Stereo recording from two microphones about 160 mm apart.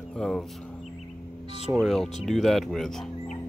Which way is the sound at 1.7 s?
Centre (ahead or behind).